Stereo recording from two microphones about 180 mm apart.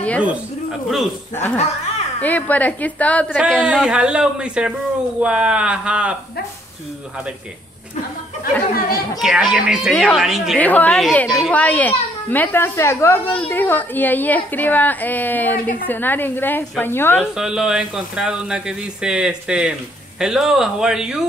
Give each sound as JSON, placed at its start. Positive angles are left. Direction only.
{"t": 1.3, "sound": "a child's voice", "side_deg": 10}
{"t": 1.6, "sound": "a sound", "side_deg": 35}
{"t": 2.2, "sound": "a child's voice", "side_deg": 10}
{"t": 8.7, "sound": "speech", "side_deg": 55}
{"t": 9.2, "sound": "a child's voice", "side_deg": 0}
{"t": 17.4, "sound": "speech", "side_deg": -5}